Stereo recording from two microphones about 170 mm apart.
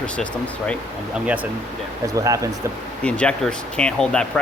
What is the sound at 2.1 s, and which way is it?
Speech, 20° right (ahead or behind).